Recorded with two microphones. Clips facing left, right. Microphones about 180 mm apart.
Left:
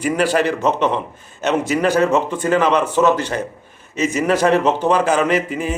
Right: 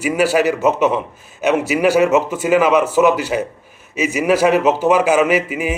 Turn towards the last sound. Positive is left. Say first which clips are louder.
# right 1 dB
turn(degrees=-10)  # may be behind; listen again after turning